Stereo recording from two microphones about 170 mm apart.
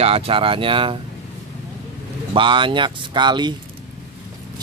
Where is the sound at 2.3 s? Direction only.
30° right (ahead or behind).